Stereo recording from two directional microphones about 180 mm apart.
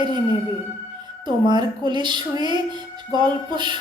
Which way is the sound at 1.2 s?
25° right (ahead or behind).